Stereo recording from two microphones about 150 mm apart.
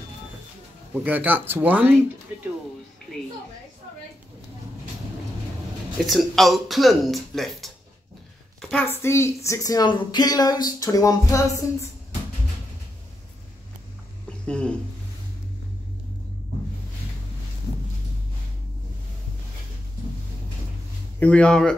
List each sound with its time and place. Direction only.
0.9 s speech: 10° right (ahead or behind)
6.0 s a woman's voice: centre (ahead or behind)
8.8 s a woman's voice: 15° left (ahead or behind)
14.4 s speech: 5° left (ahead or behind)
21.2 s speech: 5° left (ahead or behind)